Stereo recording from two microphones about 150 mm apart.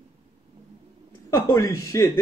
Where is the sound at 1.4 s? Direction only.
20° left (ahead or behind).